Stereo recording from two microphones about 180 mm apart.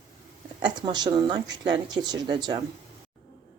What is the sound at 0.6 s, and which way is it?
Speech, 25° right (ahead or behind).